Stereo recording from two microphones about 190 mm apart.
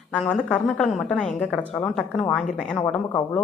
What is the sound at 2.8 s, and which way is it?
Speech, 15° left (ahead or behind).